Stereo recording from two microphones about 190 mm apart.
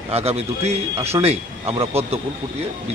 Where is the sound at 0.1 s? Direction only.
30° right (ahead or behind).